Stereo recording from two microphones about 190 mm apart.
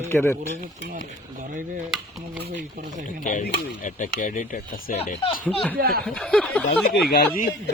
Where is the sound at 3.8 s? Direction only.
40° left (ahead or behind).